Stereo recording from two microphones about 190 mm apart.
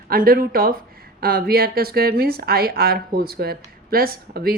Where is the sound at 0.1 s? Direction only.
50° right (ahead or behind).